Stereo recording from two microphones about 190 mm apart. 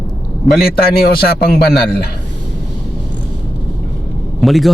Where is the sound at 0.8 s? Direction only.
50° left (ahead or behind).